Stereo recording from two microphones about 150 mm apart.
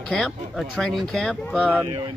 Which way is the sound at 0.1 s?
Centre (ahead or behind).